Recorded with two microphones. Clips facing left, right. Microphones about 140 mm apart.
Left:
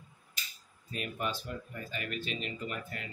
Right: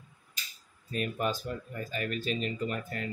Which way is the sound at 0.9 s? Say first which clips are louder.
Right 5 dB; 40° right (ahead or behind).